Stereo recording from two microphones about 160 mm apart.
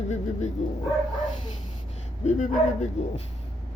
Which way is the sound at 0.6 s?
45° left (ahead or behind).